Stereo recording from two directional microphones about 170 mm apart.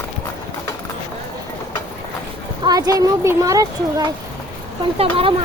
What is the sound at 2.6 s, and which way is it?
Speech, 25° right (ahead or behind).